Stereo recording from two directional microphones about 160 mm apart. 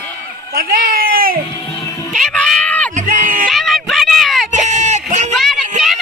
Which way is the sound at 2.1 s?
Centre (ahead or behind).